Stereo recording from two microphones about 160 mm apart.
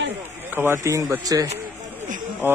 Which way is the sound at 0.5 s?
15° right (ahead or behind).